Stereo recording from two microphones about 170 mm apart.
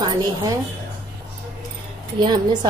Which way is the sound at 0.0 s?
25° right (ahead or behind).